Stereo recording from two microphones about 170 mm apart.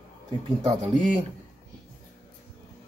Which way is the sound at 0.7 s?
25° right (ahead or behind).